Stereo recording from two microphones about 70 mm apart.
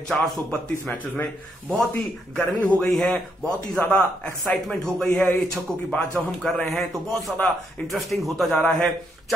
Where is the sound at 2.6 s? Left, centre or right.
Centre.